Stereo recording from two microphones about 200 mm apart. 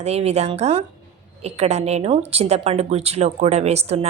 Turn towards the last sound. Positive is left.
turn(degrees=-30)  # may be behind; listen again after turning